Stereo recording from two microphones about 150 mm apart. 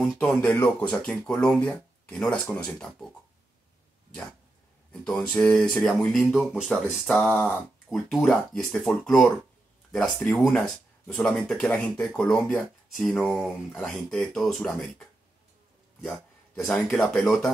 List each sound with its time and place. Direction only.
0.0 s speech: 5° left (ahead or behind)
5.0 s speech: 5° left (ahead or behind)